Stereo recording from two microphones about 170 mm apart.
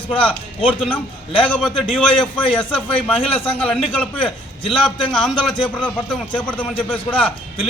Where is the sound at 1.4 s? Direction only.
5° left (ahead or behind).